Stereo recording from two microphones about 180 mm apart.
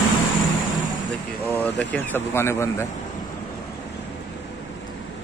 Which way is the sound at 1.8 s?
10° left (ahead or behind).